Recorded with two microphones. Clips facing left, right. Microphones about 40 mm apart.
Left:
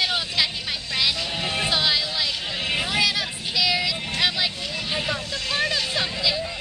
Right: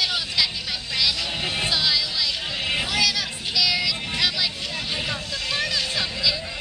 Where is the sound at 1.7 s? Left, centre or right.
Left.